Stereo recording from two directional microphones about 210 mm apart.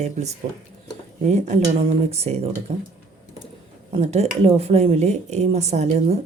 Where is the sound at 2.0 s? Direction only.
30° right (ahead or behind).